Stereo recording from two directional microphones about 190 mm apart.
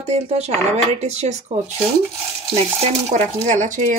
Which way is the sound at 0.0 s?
35° right (ahead or behind).